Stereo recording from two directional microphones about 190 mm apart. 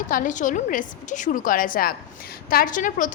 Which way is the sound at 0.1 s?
45° left (ahead or behind).